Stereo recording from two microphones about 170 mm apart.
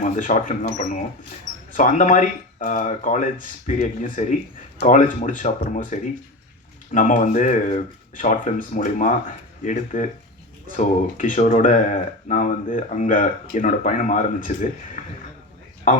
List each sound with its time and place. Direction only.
0.0 s speech: 50° left (ahead or behind)
15.9 s a man's voice: 50° left (ahead or behind)